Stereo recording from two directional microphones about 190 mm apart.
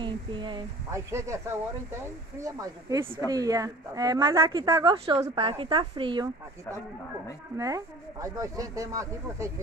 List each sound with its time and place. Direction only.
0.0 s a woman's voice: 25° right (ahead or behind)
5.0 s a woman's voice: 30° right (ahead or behind)
7.5 s speech: 15° right (ahead or behind)